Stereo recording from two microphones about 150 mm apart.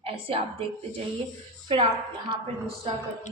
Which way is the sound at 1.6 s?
35° right (ahead or behind).